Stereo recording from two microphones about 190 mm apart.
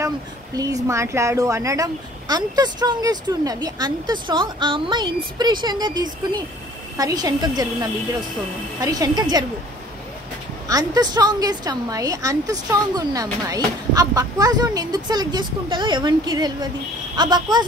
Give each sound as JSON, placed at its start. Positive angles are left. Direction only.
{"t": 0.6, "sound": "a woman's voice", "side_deg": -20}
{"t": 10.7, "sound": "a woman's voice", "side_deg": -20}